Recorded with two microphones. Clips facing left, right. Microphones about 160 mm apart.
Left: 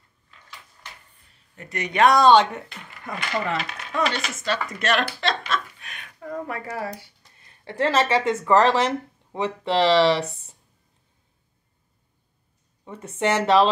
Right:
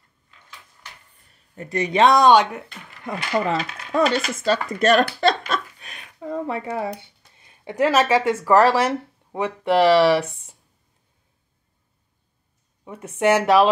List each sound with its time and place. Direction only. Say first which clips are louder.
1.6 s speech: right 2 dB; 30° right (ahead or behind); by 2.6 s 10° right (ahead or behind)
3.4 s speech: right 4 dB; 40° right (ahead or behind); by 10.2 s 5° right (ahead or behind)
12.8 s speech: right 5 dB; 10° right (ahead or behind)